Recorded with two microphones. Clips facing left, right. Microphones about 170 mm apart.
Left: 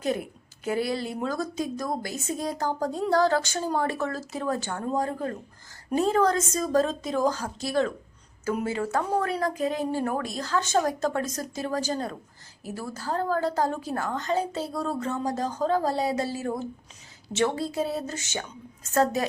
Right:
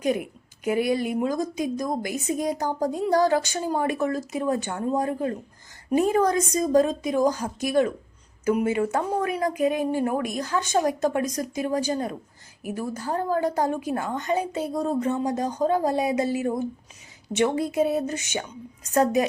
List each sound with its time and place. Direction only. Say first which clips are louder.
0.0 s a woman's voice: right 3 dB; 15° right (ahead or behind)